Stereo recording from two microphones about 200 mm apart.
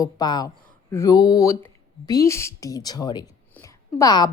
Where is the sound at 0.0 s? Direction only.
20° left (ahead or behind).